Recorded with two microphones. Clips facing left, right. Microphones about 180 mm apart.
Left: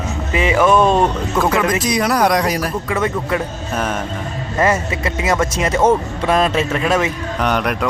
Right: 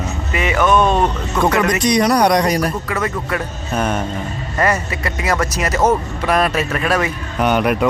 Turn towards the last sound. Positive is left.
turn(degrees=-5)  # may be behind; listen again after turning